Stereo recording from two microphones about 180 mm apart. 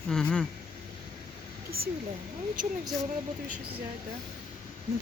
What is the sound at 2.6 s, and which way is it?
Speech, 50° right (ahead or behind).